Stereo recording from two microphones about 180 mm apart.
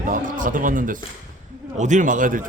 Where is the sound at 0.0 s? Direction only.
45° right (ahead or behind).